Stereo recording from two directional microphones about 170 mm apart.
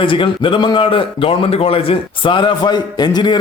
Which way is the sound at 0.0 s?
30° left (ahead or behind).